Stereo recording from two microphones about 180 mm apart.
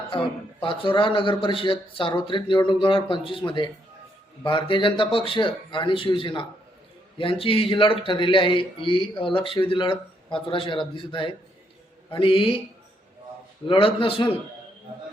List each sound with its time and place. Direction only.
0.6 s a man's voice: 30° left (ahead or behind)
13.7 s a man's voice: 30° left (ahead or behind)